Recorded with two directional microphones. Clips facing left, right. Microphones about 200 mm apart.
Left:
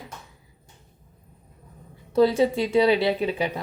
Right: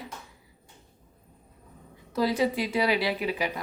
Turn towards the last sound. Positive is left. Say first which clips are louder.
# left 4 dB
turn(degrees=25)  # may be behind; listen again after turning